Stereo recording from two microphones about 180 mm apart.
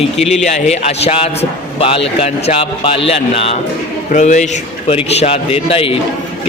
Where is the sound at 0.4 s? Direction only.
40° left (ahead or behind).